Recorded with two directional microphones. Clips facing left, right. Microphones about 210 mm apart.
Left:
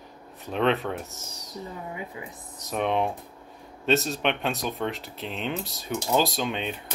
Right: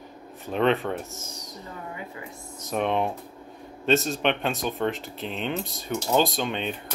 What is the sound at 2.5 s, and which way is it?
Speech, centre (ahead or behind).